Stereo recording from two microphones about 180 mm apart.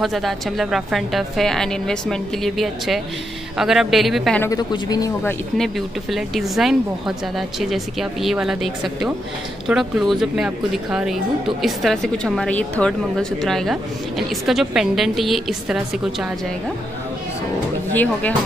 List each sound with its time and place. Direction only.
0.0 s a woman's voice: centre (ahead or behind)
4.4 s speech: 20° left (ahead or behind)
5.6 s a woman's voice: centre (ahead or behind)
17.9 s speech: 10° left (ahead or behind)